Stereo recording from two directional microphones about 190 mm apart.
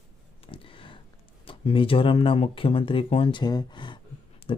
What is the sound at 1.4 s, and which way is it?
Speech, 25° left (ahead or behind).